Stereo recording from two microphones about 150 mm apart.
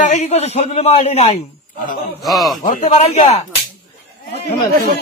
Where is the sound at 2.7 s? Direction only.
55° left (ahead or behind).